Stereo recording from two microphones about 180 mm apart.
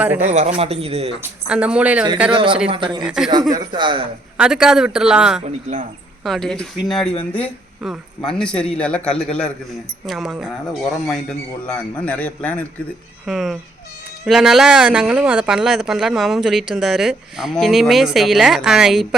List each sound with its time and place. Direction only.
0.0 s speech: 10° right (ahead or behind)
0.3 s speech: 40° right (ahead or behind)
1.2 s speech: 5° right (ahead or behind)
2.3 s speech: 30° right (ahead or behind)
3.0 s speech: 5° right (ahead or behind)
3.5 s speech: 25° right (ahead or behind)
4.4 s speech: 5° right (ahead or behind)